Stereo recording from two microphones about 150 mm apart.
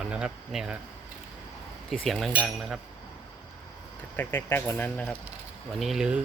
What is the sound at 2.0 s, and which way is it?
Speech, centre (ahead or behind).